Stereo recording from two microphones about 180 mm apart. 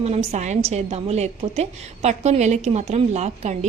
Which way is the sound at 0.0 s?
35° right (ahead or behind).